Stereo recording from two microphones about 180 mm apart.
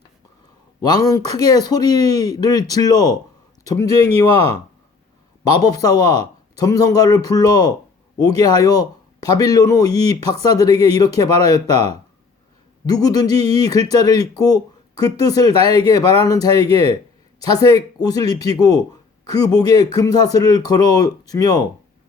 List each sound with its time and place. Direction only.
0.8 s speech: 20° left (ahead or behind)
5.5 s speech: 20° left (ahead or behind)
11.1 s speech: 35° right (ahead or behind)
12.8 s speech: 20° left (ahead or behind)
15.5 s speech: 35° right (ahead or behind)
15.8 s speech: 20° left (ahead or behind)